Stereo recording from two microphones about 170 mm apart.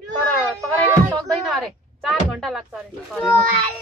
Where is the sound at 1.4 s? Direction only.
Centre (ahead or behind).